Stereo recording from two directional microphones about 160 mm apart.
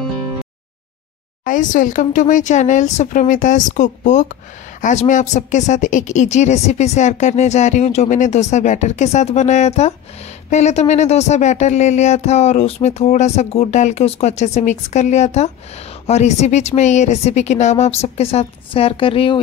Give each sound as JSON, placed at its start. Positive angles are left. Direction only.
{"t": 1.4, "sound": "speech", "side_deg": 55}